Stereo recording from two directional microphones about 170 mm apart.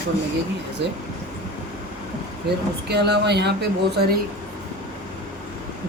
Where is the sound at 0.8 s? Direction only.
90° right.